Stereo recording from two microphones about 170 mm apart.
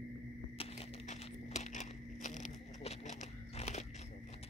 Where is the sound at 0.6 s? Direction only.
40° left (ahead or behind).